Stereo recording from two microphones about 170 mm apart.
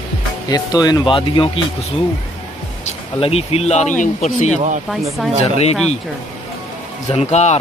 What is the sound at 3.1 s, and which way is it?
Speech, 35° left (ahead or behind).